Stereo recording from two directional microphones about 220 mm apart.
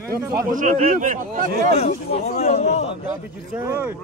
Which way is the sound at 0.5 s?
35° right (ahead or behind).